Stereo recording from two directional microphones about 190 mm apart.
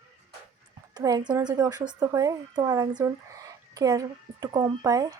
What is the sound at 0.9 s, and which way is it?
A woman's voice, 20° right (ahead or behind).